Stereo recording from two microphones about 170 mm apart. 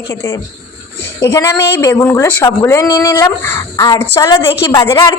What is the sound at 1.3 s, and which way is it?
A woman's voice, 15° left (ahead or behind).